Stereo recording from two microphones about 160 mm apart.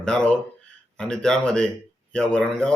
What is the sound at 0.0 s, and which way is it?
A man's voice, 5° left (ahead or behind).